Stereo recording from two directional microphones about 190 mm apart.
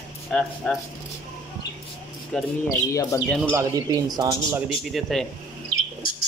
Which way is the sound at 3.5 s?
15° right (ahead or behind).